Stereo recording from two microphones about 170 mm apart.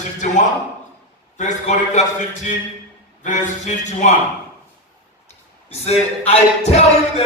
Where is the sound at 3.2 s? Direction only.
45° left (ahead or behind).